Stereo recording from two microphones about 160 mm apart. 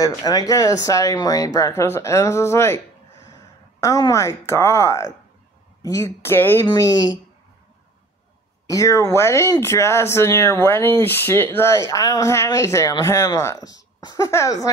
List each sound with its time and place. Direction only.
0.0 s speech: 20° left (ahead or behind)
8.6 s speech: 20° left (ahead or behind)